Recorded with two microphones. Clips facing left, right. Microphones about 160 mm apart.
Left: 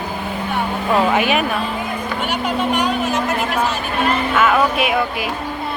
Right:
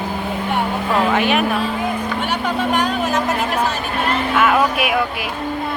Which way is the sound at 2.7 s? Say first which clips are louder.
Right 1 dB; 45° right (ahead or behind).